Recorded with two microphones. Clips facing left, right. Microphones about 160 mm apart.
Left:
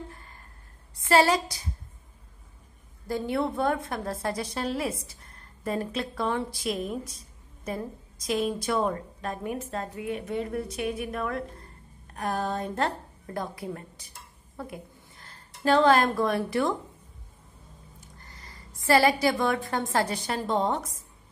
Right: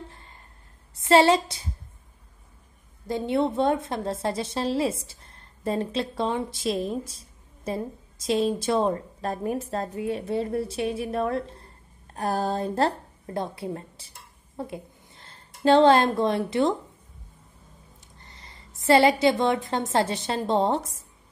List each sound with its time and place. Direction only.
0.9 s a woman's voice: 25° right (ahead or behind)
3.1 s a woman's voice: 25° right (ahead or behind)
18.0 s a sound: 25° right (ahead or behind)
18.8 s a woman's voice: 25° right (ahead or behind)